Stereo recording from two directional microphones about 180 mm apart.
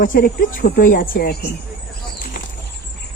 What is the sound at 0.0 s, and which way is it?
Speech, 50° left (ahead or behind).